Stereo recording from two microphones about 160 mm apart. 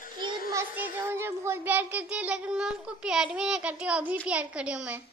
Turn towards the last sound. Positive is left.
turn(degrees=-5)  # may be behind; listen again after turning